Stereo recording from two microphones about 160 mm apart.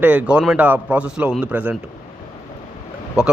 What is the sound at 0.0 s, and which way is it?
A man's voice, 10° right (ahead or behind).